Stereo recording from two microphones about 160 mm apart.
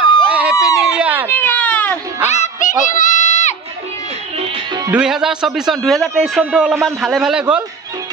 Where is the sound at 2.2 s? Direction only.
50° left (ahead or behind).